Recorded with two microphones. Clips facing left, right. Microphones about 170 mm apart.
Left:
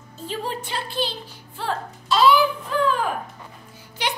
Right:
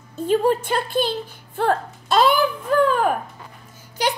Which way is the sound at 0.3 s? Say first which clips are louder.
Right 11 dB; 50° right (ahead or behind).